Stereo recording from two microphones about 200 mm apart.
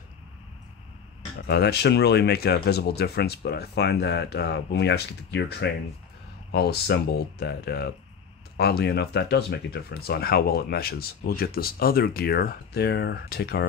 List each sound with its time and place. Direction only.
1.5 s speech: 55° left (ahead or behind)